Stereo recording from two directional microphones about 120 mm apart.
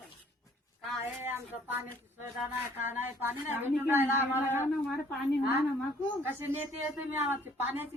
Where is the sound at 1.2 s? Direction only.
15° right (ahead or behind).